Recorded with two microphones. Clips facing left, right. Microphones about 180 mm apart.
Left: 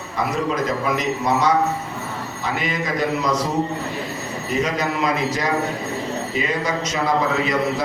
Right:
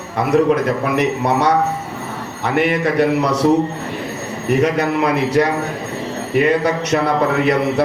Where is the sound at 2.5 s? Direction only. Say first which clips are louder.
Right 8 dB; 65° right (ahead or behind).